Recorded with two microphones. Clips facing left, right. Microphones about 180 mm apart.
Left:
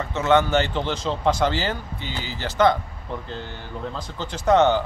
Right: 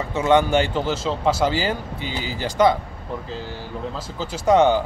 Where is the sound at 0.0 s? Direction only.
10° right (ahead or behind).